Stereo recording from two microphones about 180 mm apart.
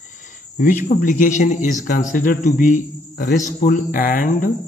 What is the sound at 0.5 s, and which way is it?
A man's voice, 50° left (ahead or behind).